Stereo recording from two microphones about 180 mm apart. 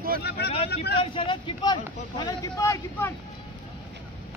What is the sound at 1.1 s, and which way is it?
Speech, 25° left (ahead or behind).